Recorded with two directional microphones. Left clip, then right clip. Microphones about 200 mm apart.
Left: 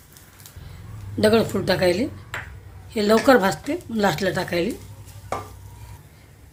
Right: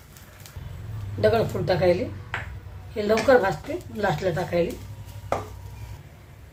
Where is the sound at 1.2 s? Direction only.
50° left (ahead or behind).